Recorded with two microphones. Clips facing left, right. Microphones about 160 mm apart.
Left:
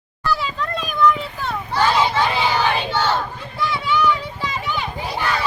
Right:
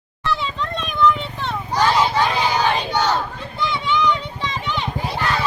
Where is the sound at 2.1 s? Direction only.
15° right (ahead or behind).